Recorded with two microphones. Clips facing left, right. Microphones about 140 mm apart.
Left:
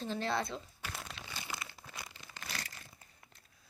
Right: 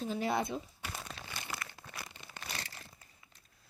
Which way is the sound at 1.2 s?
75° left (ahead or behind).